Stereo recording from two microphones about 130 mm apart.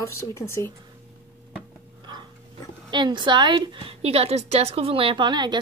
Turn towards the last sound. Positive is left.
turn(degrees=-35)  # may be behind; listen again after turning